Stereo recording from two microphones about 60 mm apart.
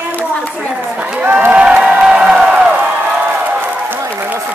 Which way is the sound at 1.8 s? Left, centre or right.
Centre.